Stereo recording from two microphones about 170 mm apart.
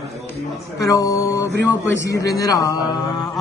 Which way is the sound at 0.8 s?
20° left (ahead or behind).